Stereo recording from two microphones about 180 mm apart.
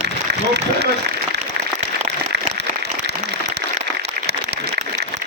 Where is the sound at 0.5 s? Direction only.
65° right (ahead or behind).